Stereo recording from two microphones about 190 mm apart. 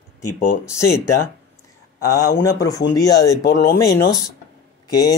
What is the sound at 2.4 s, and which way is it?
Speech, 20° left (ahead or behind).